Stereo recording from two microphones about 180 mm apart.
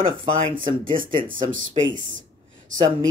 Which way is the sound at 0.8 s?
30° right (ahead or behind).